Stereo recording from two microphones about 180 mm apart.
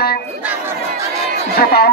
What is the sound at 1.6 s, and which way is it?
Speech, 60° left (ahead or behind).